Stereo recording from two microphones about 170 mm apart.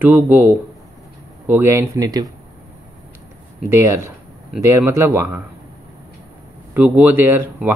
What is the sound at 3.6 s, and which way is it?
Speech, 15° right (ahead or behind).